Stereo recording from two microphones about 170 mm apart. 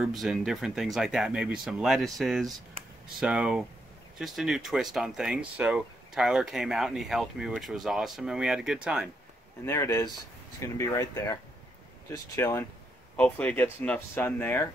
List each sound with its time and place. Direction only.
0.0 s speech: centre (ahead or behind)
9.7 s speech: 15° left (ahead or behind)